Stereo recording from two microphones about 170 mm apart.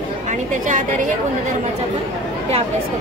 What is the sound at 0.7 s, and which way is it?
Speech, 50° right (ahead or behind).